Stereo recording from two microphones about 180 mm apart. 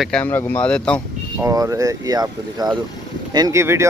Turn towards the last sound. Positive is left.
turn(degrees=-15)  # may be behind; listen again after turning